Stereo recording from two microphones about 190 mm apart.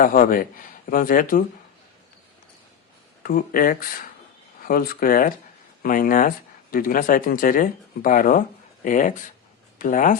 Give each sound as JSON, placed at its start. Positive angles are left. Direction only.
{"t": 0.0, "sound": "speech", "side_deg": 45}
{"t": 3.2, "sound": "speech", "side_deg": 50}